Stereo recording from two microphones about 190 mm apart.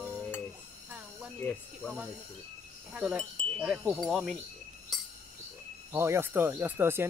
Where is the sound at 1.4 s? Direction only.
10° left (ahead or behind).